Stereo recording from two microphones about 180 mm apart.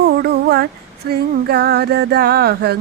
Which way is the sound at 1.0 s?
60° right (ahead or behind).